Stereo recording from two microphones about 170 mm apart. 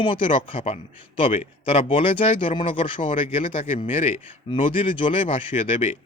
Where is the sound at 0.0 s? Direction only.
30° left (ahead or behind).